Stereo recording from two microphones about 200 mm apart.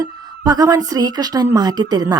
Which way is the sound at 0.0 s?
20° right (ahead or behind).